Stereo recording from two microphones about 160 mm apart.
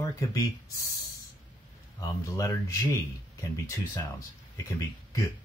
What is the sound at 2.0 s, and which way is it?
Speech, 20° left (ahead or behind).